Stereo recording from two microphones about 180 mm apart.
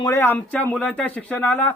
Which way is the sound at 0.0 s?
15° left (ahead or behind).